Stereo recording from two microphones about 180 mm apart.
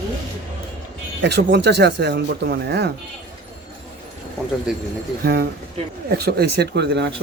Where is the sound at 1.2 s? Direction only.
70° right (ahead or behind).